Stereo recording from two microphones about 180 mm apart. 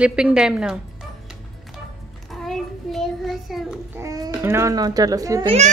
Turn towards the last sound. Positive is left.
turn(degrees=-35)  # may be behind; listen again after turning